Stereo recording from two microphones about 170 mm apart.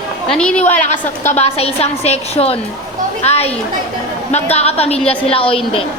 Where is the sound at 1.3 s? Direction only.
40° left (ahead or behind).